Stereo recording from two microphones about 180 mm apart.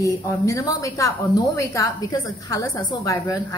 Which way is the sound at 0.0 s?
15° left (ahead or behind).